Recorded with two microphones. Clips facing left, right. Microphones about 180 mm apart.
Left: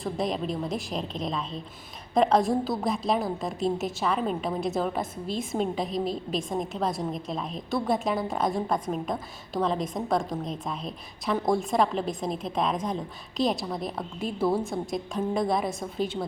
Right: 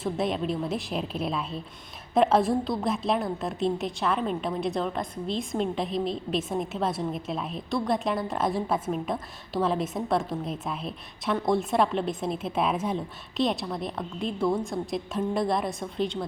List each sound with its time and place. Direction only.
0.0 s a woman's voice: centre (ahead or behind)